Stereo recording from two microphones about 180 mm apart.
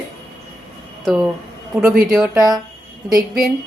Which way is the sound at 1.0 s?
5° right (ahead or behind).